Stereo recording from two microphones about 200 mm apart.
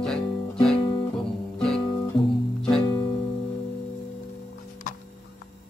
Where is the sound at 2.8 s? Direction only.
20° left (ahead or behind).